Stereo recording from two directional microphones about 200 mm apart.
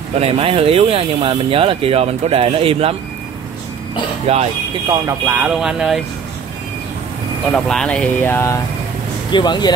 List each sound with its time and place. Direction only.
0.2 s speech: 30° right (ahead or behind)
4.3 s speech: 30° right (ahead or behind)
4.8 s speech: 15° right (ahead or behind)
7.5 s speech: 5° left (ahead or behind); by 9.8 s 20° left (ahead or behind)